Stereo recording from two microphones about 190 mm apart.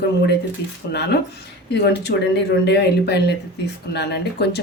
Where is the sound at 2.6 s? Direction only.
60° left (ahead or behind).